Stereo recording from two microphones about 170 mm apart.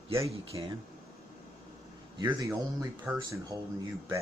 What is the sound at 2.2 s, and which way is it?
Speech, 20° right (ahead or behind).